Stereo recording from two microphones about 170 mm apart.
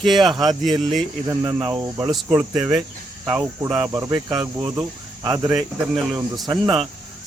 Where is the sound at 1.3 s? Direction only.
20° right (ahead or behind).